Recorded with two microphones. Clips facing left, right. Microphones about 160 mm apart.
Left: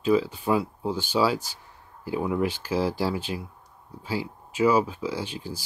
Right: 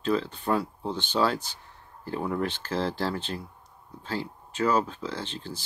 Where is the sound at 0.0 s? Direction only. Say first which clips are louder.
Left 4 dB; 10° left (ahead or behind).